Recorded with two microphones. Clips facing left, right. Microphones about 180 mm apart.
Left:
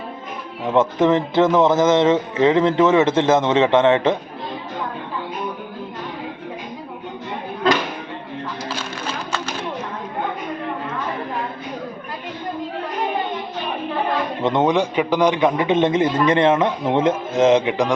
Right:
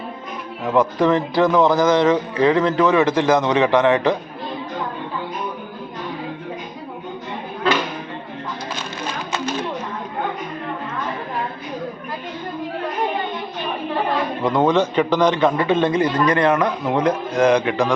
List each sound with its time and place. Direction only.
0.6 s speech: 20° left (ahead or behind)
14.4 s speech: 20° left (ahead or behind)